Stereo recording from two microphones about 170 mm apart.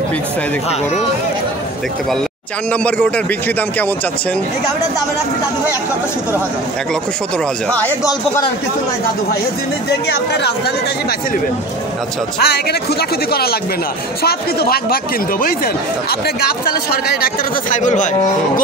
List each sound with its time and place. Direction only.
2.7 s a man's voice: 10° left (ahead or behind)
9.8 s speech: 75° left (ahead or behind)
12.4 s speech: 70° left (ahead or behind); by 18.1 s 45° left (ahead or behind)